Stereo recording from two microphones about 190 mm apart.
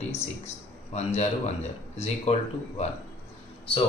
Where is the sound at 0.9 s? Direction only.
35° left (ahead or behind).